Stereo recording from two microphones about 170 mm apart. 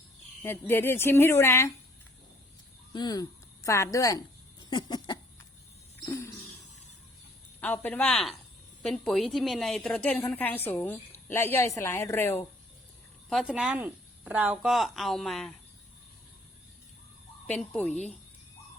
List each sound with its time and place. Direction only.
0.4 s a woman's voice: 15° left (ahead or behind)
2.9 s speech: 25° left (ahead or behind)
4.7 s a sound: 25° left (ahead or behind)
7.6 s a woman's voice: 10° left (ahead or behind)
13.3 s speech: 5° right (ahead or behind)
17.4 s speech: 5° left (ahead or behind)